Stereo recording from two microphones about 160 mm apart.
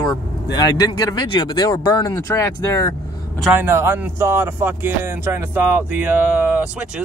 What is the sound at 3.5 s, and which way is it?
Speech, 15° right (ahead or behind).